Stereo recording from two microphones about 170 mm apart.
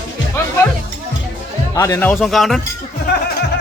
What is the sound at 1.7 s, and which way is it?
Speech, 15° left (ahead or behind).